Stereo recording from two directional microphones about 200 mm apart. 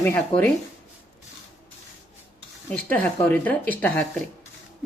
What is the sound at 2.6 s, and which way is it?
Speech, 10° left (ahead or behind).